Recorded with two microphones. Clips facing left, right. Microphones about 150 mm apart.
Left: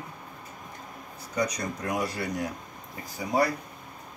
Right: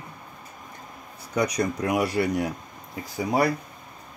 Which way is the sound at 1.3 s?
70° right (ahead or behind).